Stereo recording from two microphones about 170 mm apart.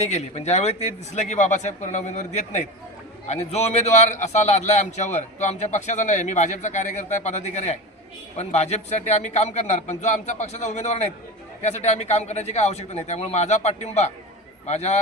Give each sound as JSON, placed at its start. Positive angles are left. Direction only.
{"t": 0.0, "sound": "a man's voice", "side_deg": 40}